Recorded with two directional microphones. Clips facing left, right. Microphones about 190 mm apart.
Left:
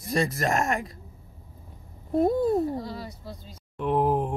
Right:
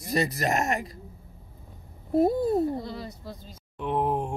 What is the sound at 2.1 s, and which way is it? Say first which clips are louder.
Speech: right 1 dB; 5° right (ahead or behind).